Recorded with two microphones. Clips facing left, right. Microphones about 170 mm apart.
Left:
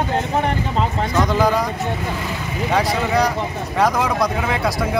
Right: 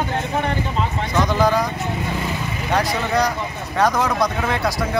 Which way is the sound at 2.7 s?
5° left (ahead or behind).